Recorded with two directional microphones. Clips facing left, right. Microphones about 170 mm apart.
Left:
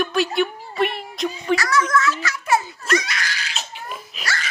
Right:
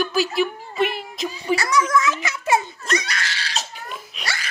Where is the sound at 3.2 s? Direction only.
30° right (ahead or behind).